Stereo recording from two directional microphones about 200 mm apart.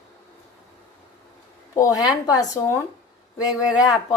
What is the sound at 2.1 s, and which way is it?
Speech, 20° left (ahead or behind).